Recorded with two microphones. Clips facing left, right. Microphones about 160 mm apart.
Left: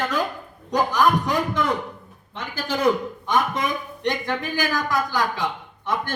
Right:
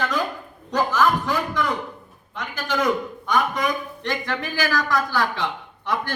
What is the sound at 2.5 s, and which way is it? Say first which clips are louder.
A man's voice: left 2 dB; 30° left (ahead or behind).